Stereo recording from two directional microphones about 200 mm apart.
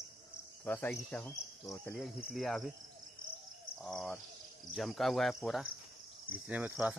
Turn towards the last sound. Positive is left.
turn(degrees=-5)  # may be behind; listen again after turning